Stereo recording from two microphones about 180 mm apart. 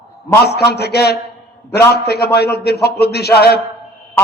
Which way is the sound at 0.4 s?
65° left (ahead or behind).